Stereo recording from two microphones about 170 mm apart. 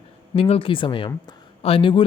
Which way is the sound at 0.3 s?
35° left (ahead or behind).